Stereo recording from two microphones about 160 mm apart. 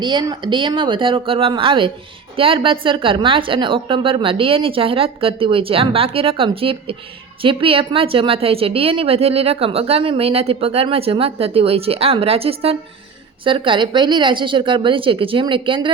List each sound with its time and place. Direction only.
0.0 s a woman's voice: 30° right (ahead or behind)